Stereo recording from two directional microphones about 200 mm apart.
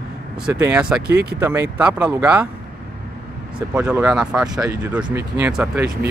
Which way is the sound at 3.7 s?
10° right (ahead or behind).